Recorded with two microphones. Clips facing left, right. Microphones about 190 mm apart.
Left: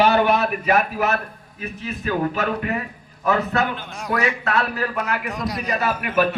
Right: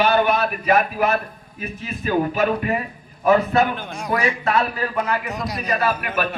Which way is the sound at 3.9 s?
Centre (ahead or behind).